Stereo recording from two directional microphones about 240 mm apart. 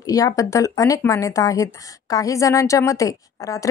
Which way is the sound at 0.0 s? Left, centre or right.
Centre.